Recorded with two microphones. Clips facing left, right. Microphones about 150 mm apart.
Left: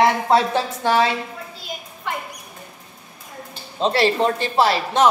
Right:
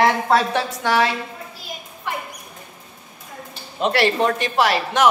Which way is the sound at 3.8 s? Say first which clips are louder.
Even; 25° left (ahead or behind).